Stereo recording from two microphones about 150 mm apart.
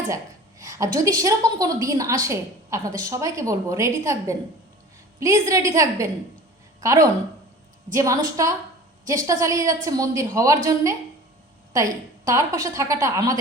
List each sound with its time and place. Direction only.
0.6 s a woman's voice: 20° right (ahead or behind)